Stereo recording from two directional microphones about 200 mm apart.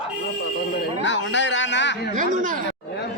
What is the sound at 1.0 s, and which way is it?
Speech, 65° left (ahead or behind).